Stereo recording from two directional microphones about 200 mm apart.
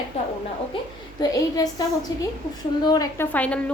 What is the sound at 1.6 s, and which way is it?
Speech, 20° left (ahead or behind).